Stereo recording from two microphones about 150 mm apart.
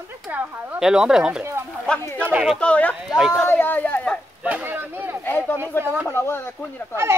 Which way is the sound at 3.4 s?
15° left (ahead or behind).